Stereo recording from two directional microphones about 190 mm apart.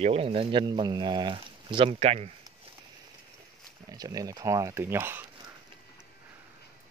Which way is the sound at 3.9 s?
20° right (ahead or behind).